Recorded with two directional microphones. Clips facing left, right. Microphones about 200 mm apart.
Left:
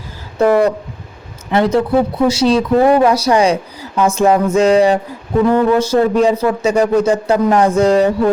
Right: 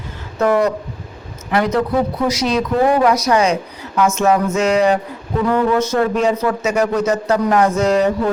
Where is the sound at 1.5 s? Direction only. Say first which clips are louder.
Left 3 dB; 30° left (ahead or behind).